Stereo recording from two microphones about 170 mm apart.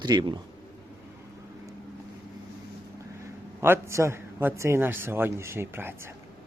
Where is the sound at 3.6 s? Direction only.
15° right (ahead or behind).